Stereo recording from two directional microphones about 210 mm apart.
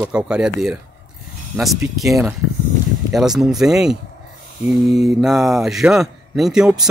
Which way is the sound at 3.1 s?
Centre (ahead or behind).